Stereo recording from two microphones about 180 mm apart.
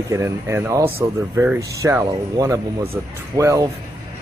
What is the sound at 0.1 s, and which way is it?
Speech, 15° right (ahead or behind).